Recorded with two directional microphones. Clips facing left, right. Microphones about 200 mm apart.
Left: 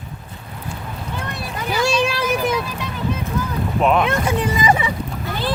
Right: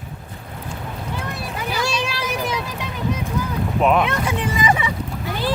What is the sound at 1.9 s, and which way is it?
Vehicle, 50° left (ahead or behind).